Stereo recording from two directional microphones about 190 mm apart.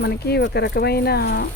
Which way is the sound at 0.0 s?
60° left (ahead or behind).